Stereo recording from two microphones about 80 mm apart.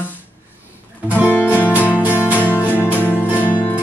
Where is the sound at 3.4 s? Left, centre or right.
Left.